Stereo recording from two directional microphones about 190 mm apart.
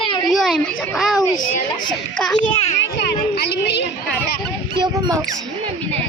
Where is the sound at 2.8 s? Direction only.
60° left (ahead or behind).